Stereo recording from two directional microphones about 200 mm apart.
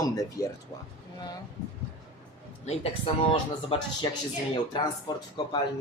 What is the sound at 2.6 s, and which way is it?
Speech, 30° left (ahead or behind).